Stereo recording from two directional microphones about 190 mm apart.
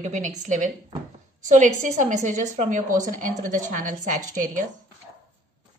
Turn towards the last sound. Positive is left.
turn(degrees=-45)  # may be behind; listen again after turning